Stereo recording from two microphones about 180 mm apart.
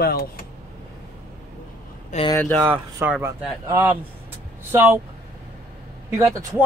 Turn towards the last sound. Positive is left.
turn(degrees=-15)  # may be behind; listen again after turning